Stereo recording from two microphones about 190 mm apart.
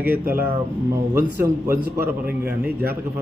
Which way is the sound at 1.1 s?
15° right (ahead or behind).